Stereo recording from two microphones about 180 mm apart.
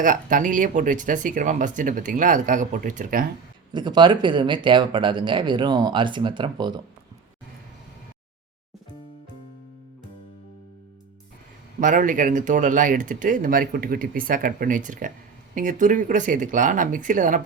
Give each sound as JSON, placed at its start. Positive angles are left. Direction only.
{"t": 0.0, "sound": "speech", "side_deg": -45}
{"t": 3.7, "sound": "speech", "side_deg": -25}
{"t": 11.8, "sound": "speech", "side_deg": -45}